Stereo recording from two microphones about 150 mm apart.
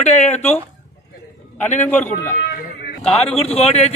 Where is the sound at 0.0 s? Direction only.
50° left (ahead or behind).